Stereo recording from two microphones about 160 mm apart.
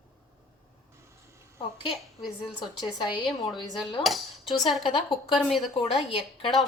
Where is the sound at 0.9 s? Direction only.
15° right (ahead or behind).